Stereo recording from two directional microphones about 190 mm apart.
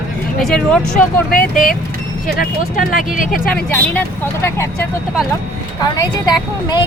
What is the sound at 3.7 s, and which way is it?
Speech, 10° left (ahead or behind).